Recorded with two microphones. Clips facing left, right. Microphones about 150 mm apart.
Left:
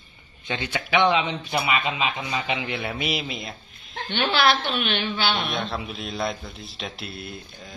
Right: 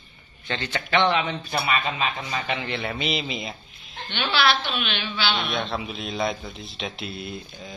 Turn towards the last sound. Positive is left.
turn(degrees=-5)  # may be behind; listen again after turning